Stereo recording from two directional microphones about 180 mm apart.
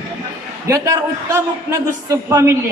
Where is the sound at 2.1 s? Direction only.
15° right (ahead or behind).